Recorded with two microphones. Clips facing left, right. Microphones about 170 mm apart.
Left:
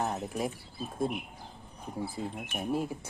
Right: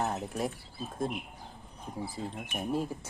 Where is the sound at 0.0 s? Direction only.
Centre (ahead or behind).